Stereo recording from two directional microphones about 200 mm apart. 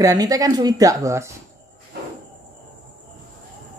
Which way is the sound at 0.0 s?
15° right (ahead or behind).